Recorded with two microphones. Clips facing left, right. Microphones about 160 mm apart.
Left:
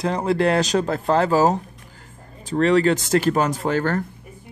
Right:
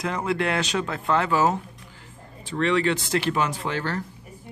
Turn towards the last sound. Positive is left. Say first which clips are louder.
# left 7 dB
turn(degrees=45)  # may be behind; listen again after turning